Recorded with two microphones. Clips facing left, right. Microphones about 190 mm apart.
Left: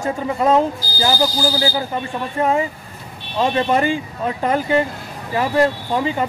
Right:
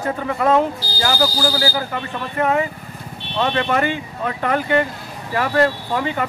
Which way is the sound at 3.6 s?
25° left (ahead or behind).